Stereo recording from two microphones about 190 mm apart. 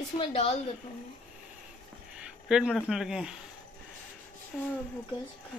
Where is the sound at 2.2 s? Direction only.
5° right (ahead or behind).